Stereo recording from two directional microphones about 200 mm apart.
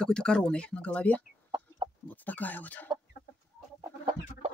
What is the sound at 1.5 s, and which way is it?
Chicken, 20° right (ahead or behind).